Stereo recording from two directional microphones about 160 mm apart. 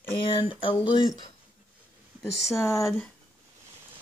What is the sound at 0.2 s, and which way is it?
Speech, 35° left (ahead or behind).